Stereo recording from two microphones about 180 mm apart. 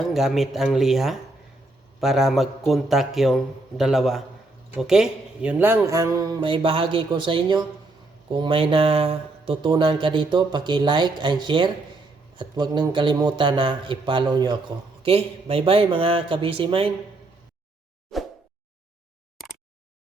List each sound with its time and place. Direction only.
0.0 s a man's voice: centre (ahead or behind); by 16.9 s 30° right (ahead or behind)